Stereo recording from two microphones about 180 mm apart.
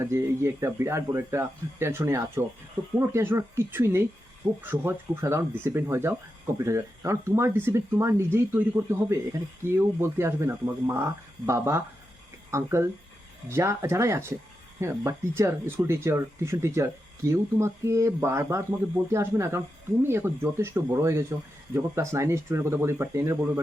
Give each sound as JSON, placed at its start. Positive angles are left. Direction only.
{"t": 0.0, "sound": "speech", "side_deg": -15}